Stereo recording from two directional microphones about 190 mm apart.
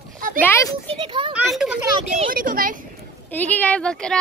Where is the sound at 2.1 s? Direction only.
45° right (ahead or behind).